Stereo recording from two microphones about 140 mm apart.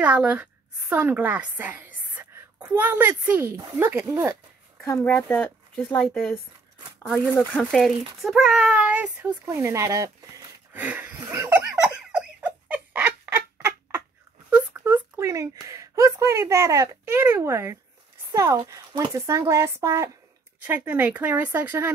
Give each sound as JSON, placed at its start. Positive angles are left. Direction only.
{"t": 0.0, "sound": "a woman's voice", "side_deg": -10}
{"t": 4.8, "sound": "speech", "side_deg": 15}
{"t": 7.5, "sound": "a child's voice", "side_deg": 0}
{"t": 10.7, "sound": "a sound", "side_deg": -10}
{"t": 11.8, "sound": "giggle", "side_deg": -5}
{"t": 12.4, "sound": "rodents", "side_deg": -10}
{"t": 14.5, "sound": "a child's voice", "side_deg": -15}